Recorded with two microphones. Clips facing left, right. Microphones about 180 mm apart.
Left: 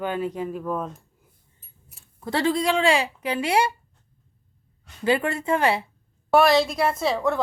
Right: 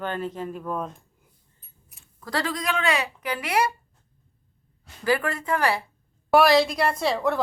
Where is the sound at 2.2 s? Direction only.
25° left (ahead or behind).